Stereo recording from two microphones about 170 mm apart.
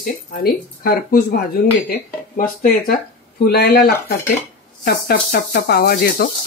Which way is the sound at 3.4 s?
65° left (ahead or behind).